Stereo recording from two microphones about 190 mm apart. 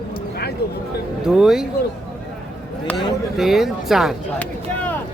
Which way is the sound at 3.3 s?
Centre (ahead or behind).